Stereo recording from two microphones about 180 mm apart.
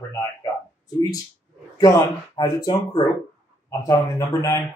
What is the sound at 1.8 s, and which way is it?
Speech, 25° left (ahead or behind).